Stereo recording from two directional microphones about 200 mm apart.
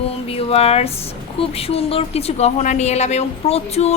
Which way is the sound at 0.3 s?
30° left (ahead or behind).